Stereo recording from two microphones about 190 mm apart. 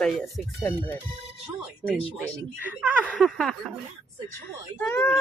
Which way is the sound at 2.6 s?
10° right (ahead or behind).